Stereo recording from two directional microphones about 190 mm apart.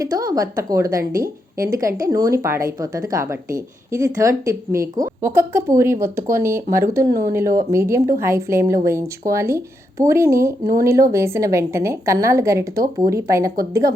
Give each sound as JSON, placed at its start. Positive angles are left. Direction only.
{"t": 0.0, "sound": "a woman's voice", "side_deg": -20}
{"t": 7.0, "sound": "speech", "side_deg": -50}
{"t": 7.3, "sound": "a woman's voice", "side_deg": -15}